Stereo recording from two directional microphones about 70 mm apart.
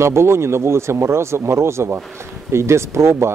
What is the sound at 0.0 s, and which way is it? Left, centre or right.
Speech, right.